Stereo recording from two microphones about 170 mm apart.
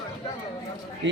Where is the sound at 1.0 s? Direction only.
90° right.